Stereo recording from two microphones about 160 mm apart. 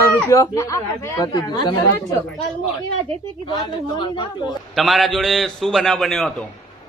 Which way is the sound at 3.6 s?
30° left (ahead or behind).